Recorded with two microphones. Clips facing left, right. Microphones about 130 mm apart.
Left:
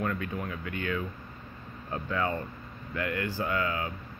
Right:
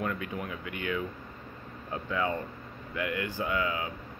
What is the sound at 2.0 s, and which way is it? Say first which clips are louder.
Speech: even; 15° right (ahead or behind).